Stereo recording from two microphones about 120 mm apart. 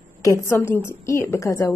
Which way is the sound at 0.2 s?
25° left (ahead or behind).